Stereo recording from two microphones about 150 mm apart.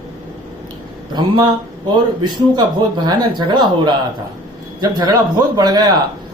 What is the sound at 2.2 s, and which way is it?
Speech, 30° right (ahead or behind).